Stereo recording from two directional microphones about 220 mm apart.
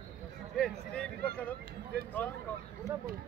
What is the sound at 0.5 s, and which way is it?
Speech, 5° left (ahead or behind).